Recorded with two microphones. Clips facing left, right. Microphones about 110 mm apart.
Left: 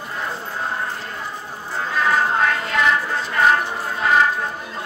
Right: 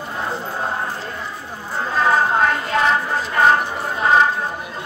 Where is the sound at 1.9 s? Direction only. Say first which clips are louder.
Right 2 dB; 30° right (ahead or behind).